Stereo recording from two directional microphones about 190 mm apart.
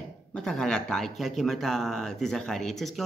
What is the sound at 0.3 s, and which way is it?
Speech, 5° left (ahead or behind).